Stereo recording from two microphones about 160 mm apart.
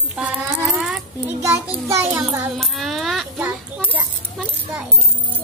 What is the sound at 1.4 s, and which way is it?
A child's voice, 20° right (ahead or behind).